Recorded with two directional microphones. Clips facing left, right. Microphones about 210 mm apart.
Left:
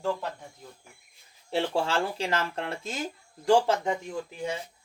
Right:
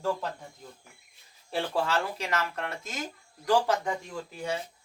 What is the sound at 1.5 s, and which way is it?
Speech, 25° left (ahead or behind).